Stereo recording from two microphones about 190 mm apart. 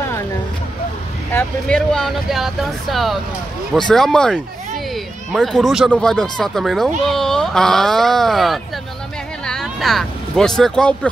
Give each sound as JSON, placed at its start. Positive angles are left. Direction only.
{"t": 1.3, "sound": "speech", "side_deg": 5}